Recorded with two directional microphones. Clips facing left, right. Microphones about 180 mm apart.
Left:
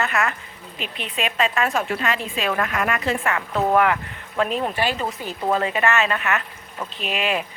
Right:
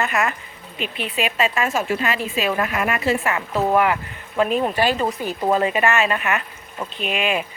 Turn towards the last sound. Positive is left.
turn(degrees=-5)  # may be behind; listen again after turning